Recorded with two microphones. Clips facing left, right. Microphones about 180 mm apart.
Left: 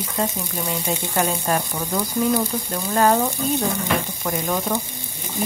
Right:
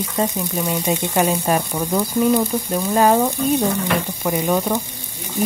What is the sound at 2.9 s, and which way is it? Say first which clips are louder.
Speech: right 2 dB; 10° right (ahead or behind).